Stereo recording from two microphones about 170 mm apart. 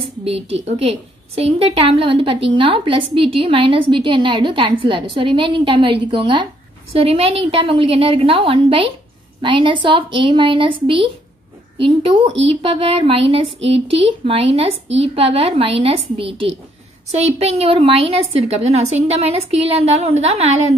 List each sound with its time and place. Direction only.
0.2 s a woman's voice: 35° right (ahead or behind)